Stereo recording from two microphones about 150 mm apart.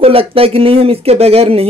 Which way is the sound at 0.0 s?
40° right (ahead or behind).